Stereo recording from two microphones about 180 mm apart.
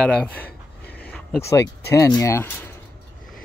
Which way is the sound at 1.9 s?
20° left (ahead or behind).